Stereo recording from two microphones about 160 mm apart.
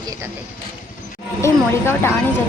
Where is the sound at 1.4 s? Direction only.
15° left (ahead or behind).